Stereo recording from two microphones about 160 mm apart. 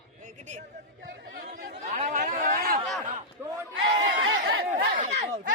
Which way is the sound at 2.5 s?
65° right (ahead or behind).